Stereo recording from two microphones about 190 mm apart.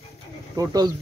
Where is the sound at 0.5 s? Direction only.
20° right (ahead or behind).